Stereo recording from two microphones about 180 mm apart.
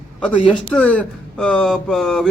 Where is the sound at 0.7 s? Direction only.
5° left (ahead or behind).